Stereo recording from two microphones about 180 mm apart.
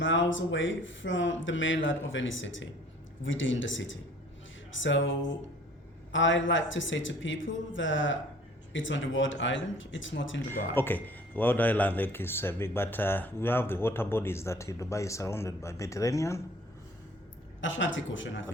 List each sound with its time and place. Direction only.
0.0 s speech: 90° left
10.5 s speech: 10° left (ahead or behind)
17.6 s speech: 90° left